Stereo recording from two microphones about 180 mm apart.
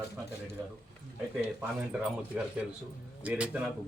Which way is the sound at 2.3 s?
5° right (ahead or behind).